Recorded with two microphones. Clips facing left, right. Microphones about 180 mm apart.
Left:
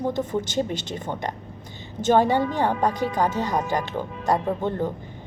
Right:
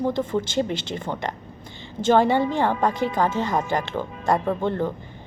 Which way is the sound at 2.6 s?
15° left (ahead or behind).